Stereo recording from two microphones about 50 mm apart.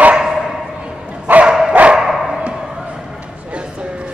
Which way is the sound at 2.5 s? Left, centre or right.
Centre.